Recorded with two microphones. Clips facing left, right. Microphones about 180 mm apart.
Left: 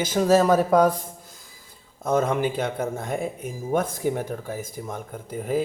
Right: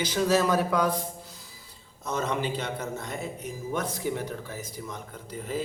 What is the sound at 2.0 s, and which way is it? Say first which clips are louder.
Speech: left 7 dB; 50° left (ahead or behind).